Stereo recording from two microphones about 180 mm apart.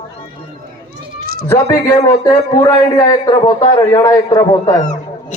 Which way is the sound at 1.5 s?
15° left (ahead or behind).